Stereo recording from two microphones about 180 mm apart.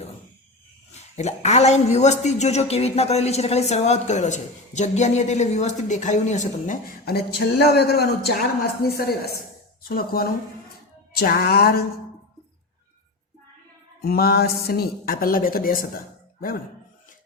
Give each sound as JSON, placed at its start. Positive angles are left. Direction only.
{"t": 0.9, "sound": "a woman's voice", "side_deg": 40}
{"t": 8.8, "sound": "a sound", "side_deg": 60}
{"t": 14.0, "sound": "a woman's voice", "side_deg": 60}